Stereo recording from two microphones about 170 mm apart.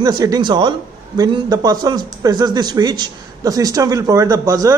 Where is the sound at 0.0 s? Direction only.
20° right (ahead or behind).